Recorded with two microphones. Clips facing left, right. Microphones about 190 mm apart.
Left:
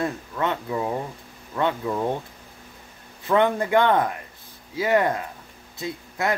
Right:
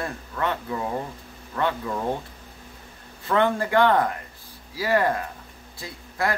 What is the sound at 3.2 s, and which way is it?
Speech, 20° left (ahead or behind).